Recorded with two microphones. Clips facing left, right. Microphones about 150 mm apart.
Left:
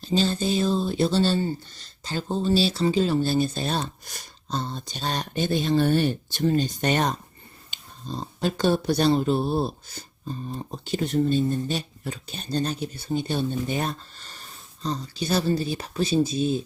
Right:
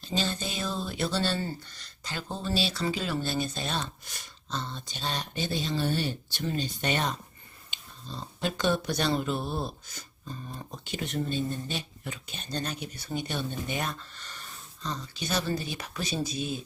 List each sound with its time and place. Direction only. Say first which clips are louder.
0.0 s speech: left 8 dB; 35° left (ahead or behind); by 6.4 s 50° left (ahead or behind)
6.4 s speech: left 8 dB; 40° left (ahead or behind)